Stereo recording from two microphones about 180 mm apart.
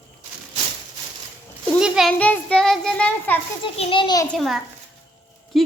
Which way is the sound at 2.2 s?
10° left (ahead or behind).